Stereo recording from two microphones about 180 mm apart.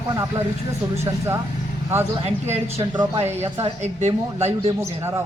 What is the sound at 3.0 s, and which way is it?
A woman's voice, 30° right (ahead or behind).